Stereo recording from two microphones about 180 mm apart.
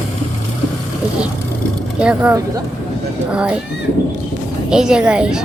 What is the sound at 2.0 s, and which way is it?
A woman's voice, 5° right (ahead or behind).